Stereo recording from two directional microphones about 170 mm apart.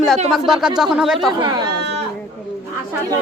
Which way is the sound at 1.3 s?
25° right (ahead or behind).